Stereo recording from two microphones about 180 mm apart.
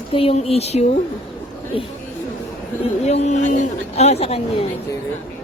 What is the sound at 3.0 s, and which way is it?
Speech, 40° left (ahead or behind).